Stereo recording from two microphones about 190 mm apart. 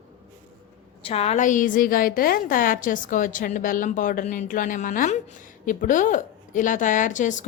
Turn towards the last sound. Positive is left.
turn(degrees=40)  # may be behind; listen again after turning